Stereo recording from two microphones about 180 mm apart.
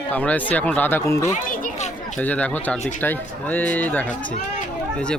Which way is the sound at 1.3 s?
45° left (ahead or behind).